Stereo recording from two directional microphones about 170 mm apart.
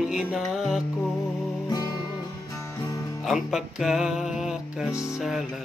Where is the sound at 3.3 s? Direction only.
Centre (ahead or behind).